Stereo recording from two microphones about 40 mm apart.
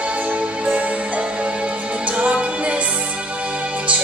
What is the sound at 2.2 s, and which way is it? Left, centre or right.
Music, right.